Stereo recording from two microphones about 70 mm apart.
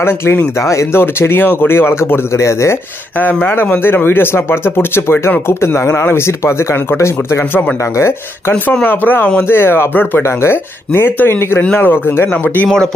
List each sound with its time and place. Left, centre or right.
0.0 s speech: left
3.4 s speech: left
12.6 s speech: centre